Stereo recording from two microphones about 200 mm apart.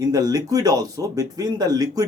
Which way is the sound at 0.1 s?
20° right (ahead or behind).